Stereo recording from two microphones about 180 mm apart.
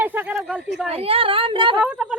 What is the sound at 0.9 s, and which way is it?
Speech, 30° right (ahead or behind).